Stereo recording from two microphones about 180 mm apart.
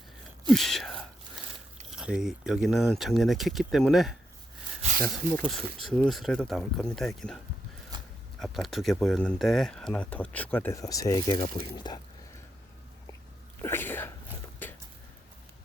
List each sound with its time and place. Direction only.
0.5 s speech: centre (ahead or behind)
4.8 s a sound: 45° right (ahead or behind)
5.1 s speech: 5° left (ahead or behind)
8.4 s speech: centre (ahead or behind); by 11.9 s 25° left (ahead or behind)
13.6 s speech: 10° left (ahead or behind)
14.6 s a sound: 10° left (ahead or behind)